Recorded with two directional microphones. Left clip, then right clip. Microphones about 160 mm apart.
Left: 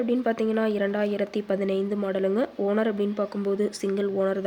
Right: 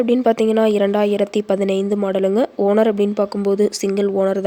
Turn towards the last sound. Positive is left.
turn(degrees=-45)  # may be behind; listen again after turning